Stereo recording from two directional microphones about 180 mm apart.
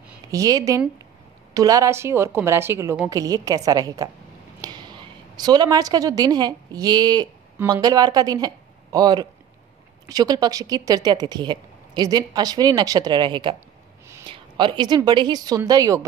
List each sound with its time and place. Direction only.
0.3 s a woman's voice: 20° right (ahead or behind)